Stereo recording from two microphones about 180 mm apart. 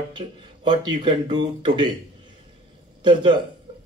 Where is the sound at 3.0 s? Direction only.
25° right (ahead or behind).